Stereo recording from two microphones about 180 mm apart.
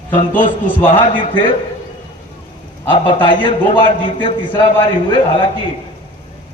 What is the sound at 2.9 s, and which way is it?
A man's voice, 25° left (ahead or behind).